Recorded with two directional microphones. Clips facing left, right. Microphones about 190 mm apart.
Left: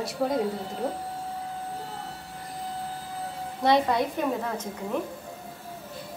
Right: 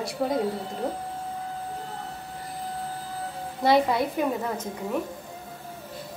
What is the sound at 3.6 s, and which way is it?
Speech, 5° right (ahead or behind).